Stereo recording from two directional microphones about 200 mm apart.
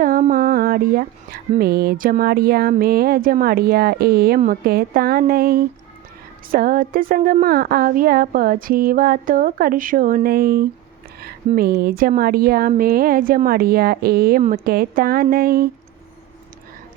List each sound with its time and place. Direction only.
0.0 s music: 45° right (ahead or behind)